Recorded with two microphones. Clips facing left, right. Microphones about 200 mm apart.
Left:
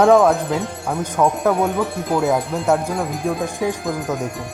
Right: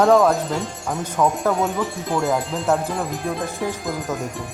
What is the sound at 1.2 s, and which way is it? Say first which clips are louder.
Speech: left 2 dB; 15° left (ahead or behind).